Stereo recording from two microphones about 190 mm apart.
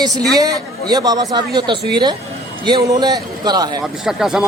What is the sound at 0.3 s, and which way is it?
Speech, 20° right (ahead or behind).